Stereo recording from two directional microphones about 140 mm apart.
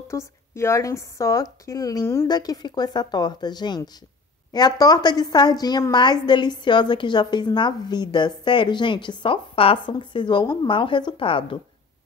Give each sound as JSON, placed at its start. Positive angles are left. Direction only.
{"t": 0.1, "sound": "a woman's voice", "side_deg": 20}